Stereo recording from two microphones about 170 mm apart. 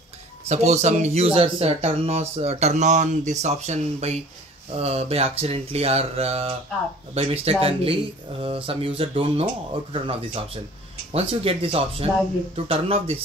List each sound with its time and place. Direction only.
0.5 s speech: 40° right (ahead or behind)